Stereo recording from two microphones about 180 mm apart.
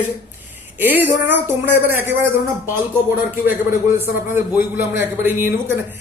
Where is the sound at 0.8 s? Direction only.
10° right (ahead or behind).